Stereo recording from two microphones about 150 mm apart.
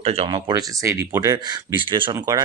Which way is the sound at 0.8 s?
20° right (ahead or behind).